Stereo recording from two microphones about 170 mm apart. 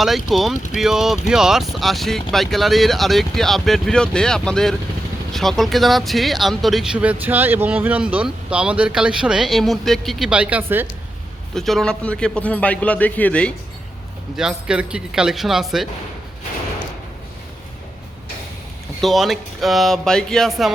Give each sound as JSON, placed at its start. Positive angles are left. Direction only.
{"t": 0.0, "sound": "speech", "side_deg": 0}
{"t": 11.5, "sound": "a man's voice", "side_deg": 0}
{"t": 14.3, "sound": "speech", "side_deg": -5}
{"t": 19.0, "sound": "speech", "side_deg": 0}